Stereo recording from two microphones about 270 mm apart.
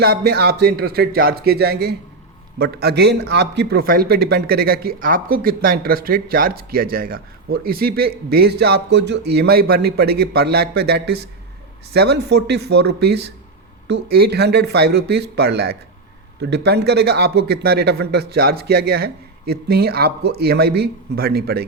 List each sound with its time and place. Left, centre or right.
0.0 s a man's voice: right